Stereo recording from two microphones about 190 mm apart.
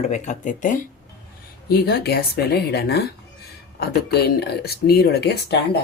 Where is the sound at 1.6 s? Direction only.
55° left (ahead or behind).